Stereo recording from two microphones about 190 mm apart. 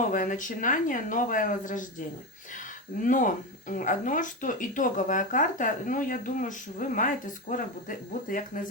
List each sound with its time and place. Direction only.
0.1 s speech: 45° left (ahead or behind)
3.0 s speech: 45° left (ahead or behind)